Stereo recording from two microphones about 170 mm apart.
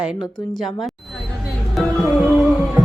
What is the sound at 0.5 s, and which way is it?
Music, centre (ahead or behind).